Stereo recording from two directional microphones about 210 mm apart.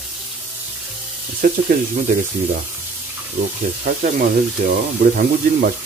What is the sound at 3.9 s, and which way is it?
Speech, 50° right (ahead or behind).